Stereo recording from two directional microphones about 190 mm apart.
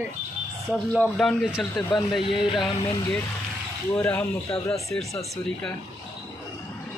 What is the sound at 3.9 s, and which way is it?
Speech, 15° left (ahead or behind).